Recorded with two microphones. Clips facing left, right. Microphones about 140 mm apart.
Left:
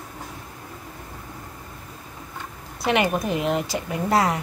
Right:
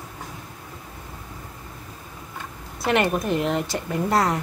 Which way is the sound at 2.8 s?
5° left (ahead or behind).